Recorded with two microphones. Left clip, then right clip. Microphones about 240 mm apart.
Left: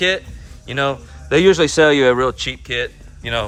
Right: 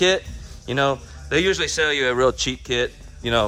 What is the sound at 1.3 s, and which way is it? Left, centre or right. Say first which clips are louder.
Speech: left 7 dB; centre.